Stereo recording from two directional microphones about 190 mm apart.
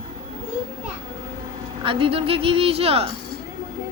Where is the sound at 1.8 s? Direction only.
30° right (ahead or behind).